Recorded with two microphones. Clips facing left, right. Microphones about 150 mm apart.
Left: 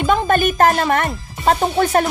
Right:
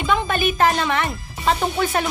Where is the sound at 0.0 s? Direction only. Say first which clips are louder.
Left 5 dB; 45° left (ahead or behind).